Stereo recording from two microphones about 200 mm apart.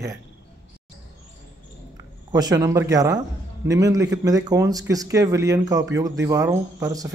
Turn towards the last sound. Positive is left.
turn(degrees=-15)  # may be behind; listen again after turning